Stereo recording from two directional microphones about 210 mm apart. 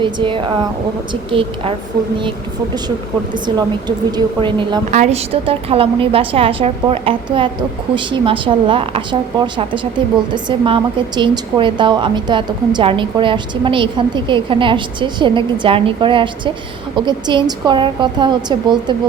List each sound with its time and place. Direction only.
0.0 s a woman's voice: 25° right (ahead or behind)
3.3 s a woman's voice: 20° right (ahead or behind)